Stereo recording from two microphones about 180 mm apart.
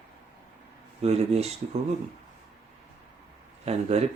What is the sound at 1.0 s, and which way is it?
Speech, 35° right (ahead or behind).